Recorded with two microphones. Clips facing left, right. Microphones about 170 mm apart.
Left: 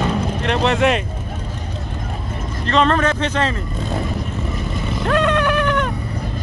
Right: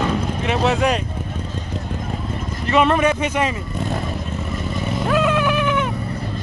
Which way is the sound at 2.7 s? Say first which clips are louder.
Right 1 dB; 10° right (ahead or behind).